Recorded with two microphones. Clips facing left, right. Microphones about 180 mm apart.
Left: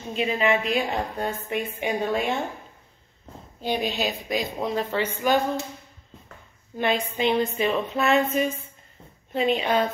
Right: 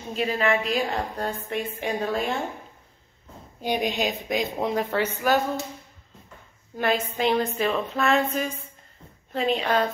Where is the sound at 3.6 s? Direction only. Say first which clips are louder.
Right 1 dB; 15° right (ahead or behind).